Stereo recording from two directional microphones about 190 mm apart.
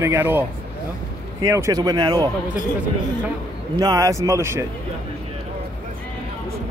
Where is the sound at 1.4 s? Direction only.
15° right (ahead or behind).